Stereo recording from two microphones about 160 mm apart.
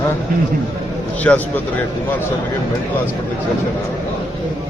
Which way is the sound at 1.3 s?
10° left (ahead or behind).